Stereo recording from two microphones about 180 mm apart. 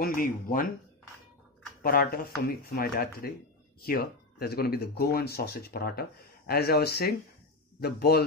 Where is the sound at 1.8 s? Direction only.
55° left (ahead or behind).